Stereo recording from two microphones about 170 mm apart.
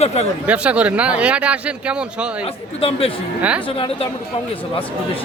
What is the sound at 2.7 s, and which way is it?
Speech, 35° left (ahead or behind).